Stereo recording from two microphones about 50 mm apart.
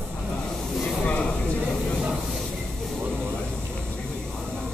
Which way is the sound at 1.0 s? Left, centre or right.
Left.